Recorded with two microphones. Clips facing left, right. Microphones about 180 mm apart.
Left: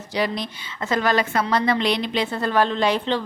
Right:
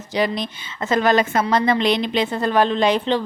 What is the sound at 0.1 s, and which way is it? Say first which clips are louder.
A woman's voice: right 3 dB; 20° right (ahead or behind).